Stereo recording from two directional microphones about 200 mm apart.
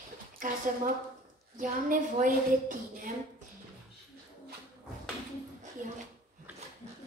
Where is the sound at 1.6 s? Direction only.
40° right (ahead or behind).